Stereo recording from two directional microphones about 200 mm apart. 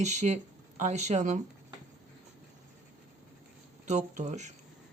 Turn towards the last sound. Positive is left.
turn(degrees=-35)  # may be behind; listen again after turning